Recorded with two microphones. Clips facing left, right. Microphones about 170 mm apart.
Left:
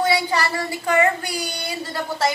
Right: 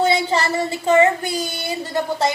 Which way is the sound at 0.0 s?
25° right (ahead or behind).